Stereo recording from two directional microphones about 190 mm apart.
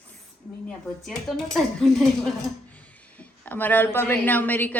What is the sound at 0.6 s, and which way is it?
A woman's voice, centre (ahead or behind).